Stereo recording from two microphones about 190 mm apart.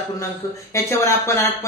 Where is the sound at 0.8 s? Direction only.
15° left (ahead or behind).